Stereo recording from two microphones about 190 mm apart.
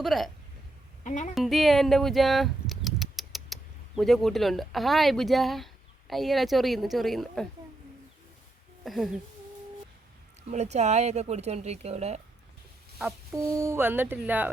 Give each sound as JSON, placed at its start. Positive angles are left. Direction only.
{"t": 0.0, "sound": "speech", "side_deg": 0}
{"t": 1.0, "sound": "speech", "side_deg": 40}
{"t": 1.4, "sound": "speech", "side_deg": 0}
{"t": 8.8, "sound": "speech", "side_deg": 0}
{"t": 10.5, "sound": "speech", "side_deg": -35}
{"t": 13.3, "sound": "speech", "side_deg": -15}